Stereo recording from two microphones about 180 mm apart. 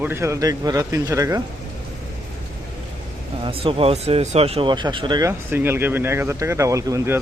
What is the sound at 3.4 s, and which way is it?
Speech, 30° right (ahead or behind).